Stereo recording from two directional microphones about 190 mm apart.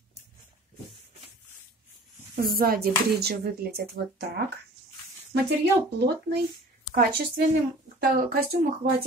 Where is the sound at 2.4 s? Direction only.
50° right (ahead or behind).